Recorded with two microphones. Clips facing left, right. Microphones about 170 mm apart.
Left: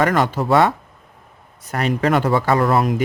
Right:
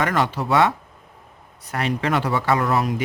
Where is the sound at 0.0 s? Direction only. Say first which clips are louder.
Left 4 dB; 45° left (ahead or behind).